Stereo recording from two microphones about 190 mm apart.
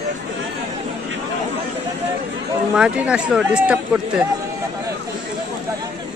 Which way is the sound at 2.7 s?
5° right (ahead or behind).